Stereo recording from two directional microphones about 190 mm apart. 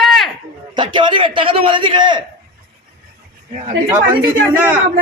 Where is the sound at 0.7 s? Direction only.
25° right (ahead or behind).